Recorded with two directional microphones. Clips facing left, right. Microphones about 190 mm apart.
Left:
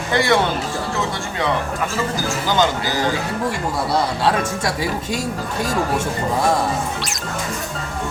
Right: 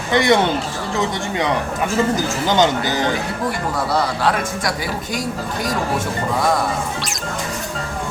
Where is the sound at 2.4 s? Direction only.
20° right (ahead or behind).